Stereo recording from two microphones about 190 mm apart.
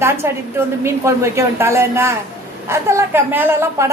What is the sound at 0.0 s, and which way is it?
A woman's voice, 15° right (ahead or behind).